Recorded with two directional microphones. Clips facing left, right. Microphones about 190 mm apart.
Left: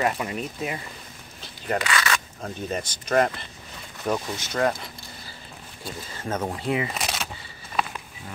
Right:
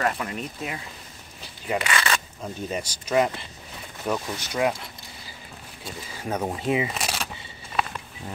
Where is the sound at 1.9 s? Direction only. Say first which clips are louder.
Even; 25° right (ahead or behind).